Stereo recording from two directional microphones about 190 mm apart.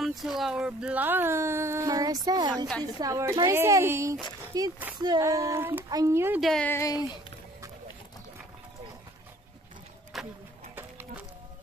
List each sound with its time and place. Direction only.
0.0 s speech: centre (ahead or behind)
6.4 s speech: 5° left (ahead or behind); by 7.3 s 20° left (ahead or behind)
10.1 s a sound: centre (ahead or behind)
10.8 s music: 10° right (ahead or behind)